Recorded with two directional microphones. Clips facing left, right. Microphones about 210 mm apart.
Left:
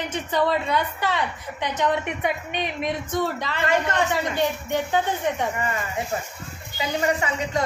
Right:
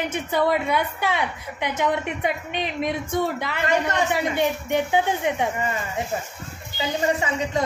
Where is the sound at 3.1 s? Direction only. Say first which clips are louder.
Right 1 dB; 10° right (ahead or behind).